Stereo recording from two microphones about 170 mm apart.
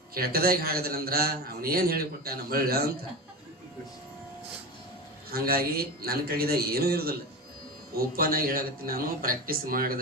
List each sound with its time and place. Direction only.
0.1 s a man's voice: 65° right (ahead or behind)
5.3 s a man's voice: 65° right (ahead or behind)